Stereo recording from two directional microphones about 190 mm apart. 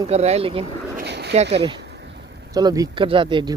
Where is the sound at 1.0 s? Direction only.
60° right (ahead or behind).